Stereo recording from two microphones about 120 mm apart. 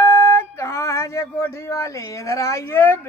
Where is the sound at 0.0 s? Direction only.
20° left (ahead or behind).